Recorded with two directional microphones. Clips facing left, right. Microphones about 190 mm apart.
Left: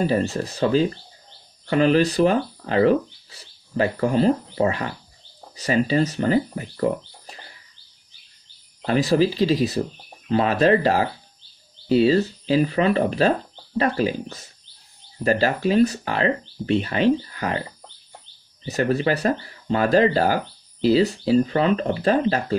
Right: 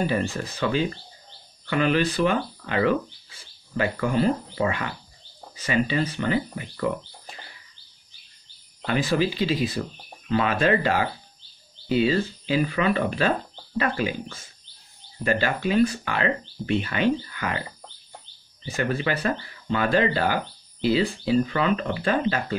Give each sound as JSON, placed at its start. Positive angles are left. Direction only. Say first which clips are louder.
{"t": 0.0, "sound": "speech", "louder": "left 4 dB", "side_deg": 35}
{"t": 8.8, "sound": "speech", "louder": "left 5 dB", "side_deg": 35}